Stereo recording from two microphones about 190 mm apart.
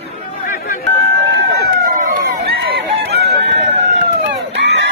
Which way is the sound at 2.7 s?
60° right (ahead or behind).